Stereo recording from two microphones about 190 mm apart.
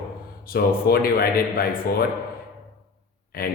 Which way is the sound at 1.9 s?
50° left (ahead or behind).